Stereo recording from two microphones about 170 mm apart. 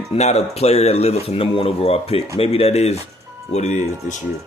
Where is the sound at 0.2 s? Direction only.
40° left (ahead or behind).